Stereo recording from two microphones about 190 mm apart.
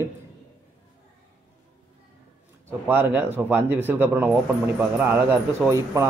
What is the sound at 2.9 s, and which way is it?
Speech, 10° right (ahead or behind).